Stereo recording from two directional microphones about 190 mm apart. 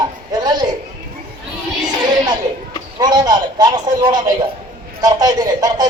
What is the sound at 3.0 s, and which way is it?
Speech, 20° right (ahead or behind).